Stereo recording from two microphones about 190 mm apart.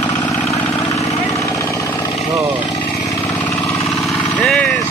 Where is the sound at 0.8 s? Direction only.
15° left (ahead or behind).